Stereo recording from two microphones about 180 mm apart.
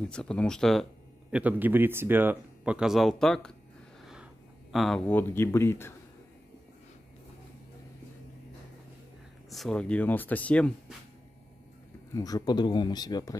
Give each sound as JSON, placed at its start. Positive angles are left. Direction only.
{"t": 0.1, "sound": "speech", "side_deg": 5}
{"t": 1.3, "sound": "speech", "side_deg": -10}
{"t": 4.0, "sound": "a sound", "side_deg": -5}
{"t": 4.7, "sound": "speech", "side_deg": 0}
{"t": 9.5, "sound": "speech", "side_deg": 0}
{"t": 12.1, "sound": "speech", "side_deg": 20}